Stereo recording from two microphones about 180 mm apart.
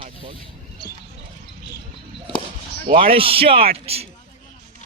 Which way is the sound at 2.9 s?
30° right (ahead or behind).